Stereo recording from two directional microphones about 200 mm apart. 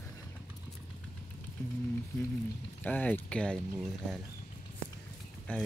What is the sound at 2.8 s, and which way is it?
Speech, 10° left (ahead or behind).